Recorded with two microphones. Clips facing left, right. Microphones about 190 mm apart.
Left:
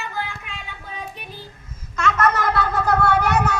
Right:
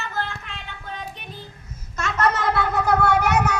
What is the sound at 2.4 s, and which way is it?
Cat, 20° right (ahead or behind).